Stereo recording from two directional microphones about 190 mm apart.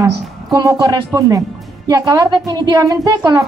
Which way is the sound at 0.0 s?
20° right (ahead or behind).